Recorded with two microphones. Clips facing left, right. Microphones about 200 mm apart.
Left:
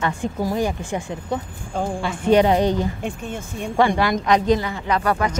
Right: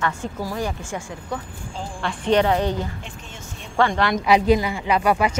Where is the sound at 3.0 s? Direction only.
55° left (ahead or behind).